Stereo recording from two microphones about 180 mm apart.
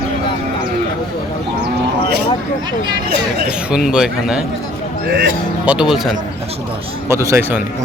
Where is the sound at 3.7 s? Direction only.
Centre (ahead or behind).